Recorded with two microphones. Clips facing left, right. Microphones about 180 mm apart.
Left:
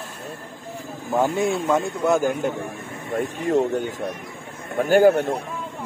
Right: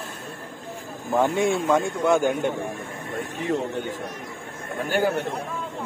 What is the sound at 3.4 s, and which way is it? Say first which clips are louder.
Speech: left 5 dB; 45° left (ahead or behind).